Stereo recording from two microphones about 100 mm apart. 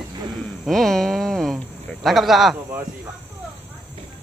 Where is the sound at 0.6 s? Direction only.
5° left (ahead or behind).